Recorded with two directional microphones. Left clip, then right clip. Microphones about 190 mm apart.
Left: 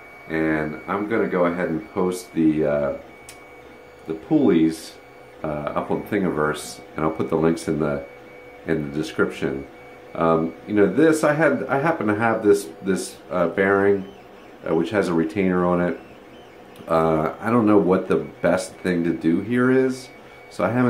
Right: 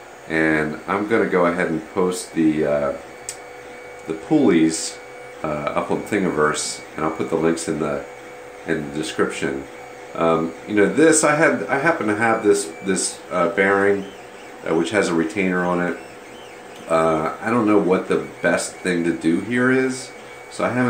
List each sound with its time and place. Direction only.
0.3 s speech: 15° right (ahead or behind)
2.0 s speech: centre (ahead or behind)
4.3 s speech: 5° right (ahead or behind)
7.0 s speech: 15° left (ahead or behind)
16.9 s speech: 15° left (ahead or behind)